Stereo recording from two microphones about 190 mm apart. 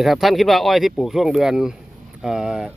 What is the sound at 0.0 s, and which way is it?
Speech, centre (ahead or behind).